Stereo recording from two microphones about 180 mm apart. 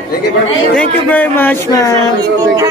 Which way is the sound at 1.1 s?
10° left (ahead or behind).